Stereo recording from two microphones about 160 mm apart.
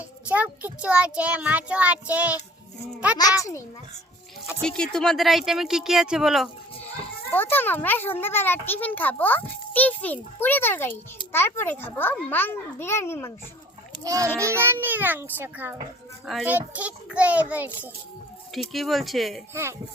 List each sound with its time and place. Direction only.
0.3 s a child's voice: 10° right (ahead or behind)
4.4 s speech: 5° left (ahead or behind)
7.3 s a child's voice: 10° left (ahead or behind)
14.0 s a child's voice: 20° right (ahead or behind)
18.7 s speech: centre (ahead or behind)